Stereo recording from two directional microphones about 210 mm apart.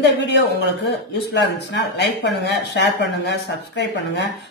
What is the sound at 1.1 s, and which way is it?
Speech, 55° left (ahead or behind).